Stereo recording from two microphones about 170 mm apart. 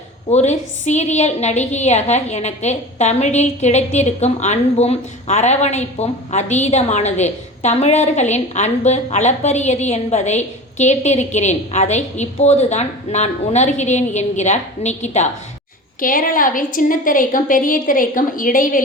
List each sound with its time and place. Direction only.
0.3 s a woman's voice: 40° left (ahead or behind)
16.0 s a woman's voice: 55° left (ahead or behind)